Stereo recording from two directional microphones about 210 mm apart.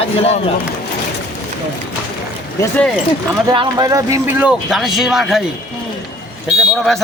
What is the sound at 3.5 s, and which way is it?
Speech, 20° right (ahead or behind).